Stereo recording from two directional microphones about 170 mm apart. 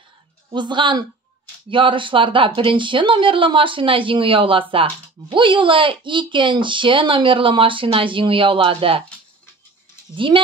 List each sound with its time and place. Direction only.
0.5 s speech: 30° right (ahead or behind)
10.1 s speech: 30° right (ahead or behind)